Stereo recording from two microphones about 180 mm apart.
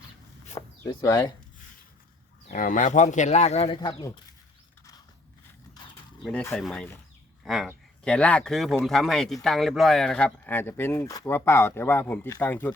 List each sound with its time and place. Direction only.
1.0 s speech: 15° left (ahead or behind)
2.5 s speech: 50° left (ahead or behind); by 4.1 s 25° left (ahead or behind)
6.6 s speech: centre (ahead or behind)